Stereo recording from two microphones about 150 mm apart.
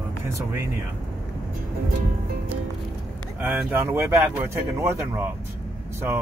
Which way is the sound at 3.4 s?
15° right (ahead or behind).